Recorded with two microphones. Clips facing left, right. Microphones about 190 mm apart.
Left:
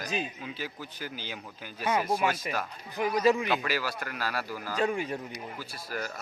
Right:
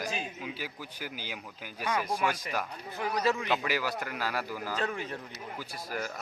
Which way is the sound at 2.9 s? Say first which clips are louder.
Left 5 dB; 15° left (ahead or behind).